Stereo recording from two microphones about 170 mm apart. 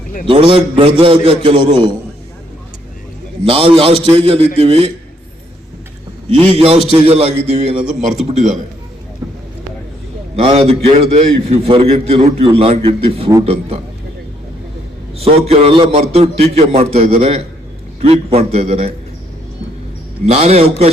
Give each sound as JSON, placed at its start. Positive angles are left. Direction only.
{"t": 0.3, "sound": "a man's voice", "side_deg": -30}
{"t": 3.4, "sound": "a man's voice", "side_deg": -30}
{"t": 6.5, "sound": "a man's voice", "side_deg": -35}
{"t": 9.2, "sound": "vehicle", "side_deg": -15}
{"t": 10.4, "sound": "a man's voice", "side_deg": -35}
{"t": 15.2, "sound": "a man's voice", "side_deg": -35}
{"t": 20.2, "sound": "a man's voice", "side_deg": -40}